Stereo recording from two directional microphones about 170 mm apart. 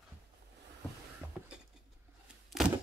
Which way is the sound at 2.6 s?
Centre (ahead or behind).